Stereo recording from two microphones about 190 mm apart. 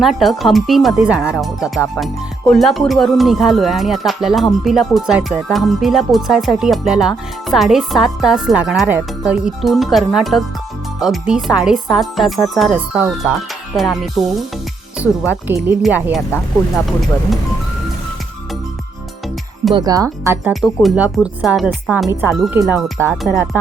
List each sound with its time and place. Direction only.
0.0 s speech: centre (ahead or behind)
15.0 s speech: 15° left (ahead or behind)
15.4 s speech: 10° right (ahead or behind)
19.7 s speech: 20° right (ahead or behind)
20.5 s speech: centre (ahead or behind)
23.0 s speech: centre (ahead or behind)